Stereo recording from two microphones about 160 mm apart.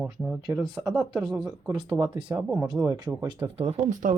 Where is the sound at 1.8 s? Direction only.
25° right (ahead or behind).